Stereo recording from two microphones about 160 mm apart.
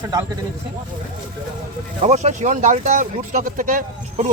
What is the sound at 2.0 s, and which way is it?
Speech, 45° right (ahead or behind).